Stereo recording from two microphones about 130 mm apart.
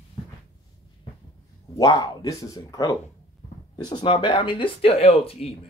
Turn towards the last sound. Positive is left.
turn(degrees=50)  # may be behind; listen again after turning